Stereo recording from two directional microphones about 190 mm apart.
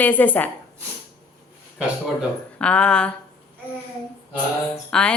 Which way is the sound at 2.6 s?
5° left (ahead or behind).